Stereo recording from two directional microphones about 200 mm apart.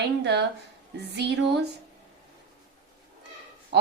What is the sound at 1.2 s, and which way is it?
Speech, 55° right (ahead or behind).